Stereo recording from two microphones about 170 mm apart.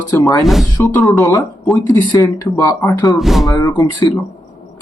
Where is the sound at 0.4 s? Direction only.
Centre (ahead or behind).